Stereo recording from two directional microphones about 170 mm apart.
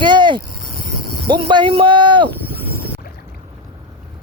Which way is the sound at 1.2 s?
30° right (ahead or behind).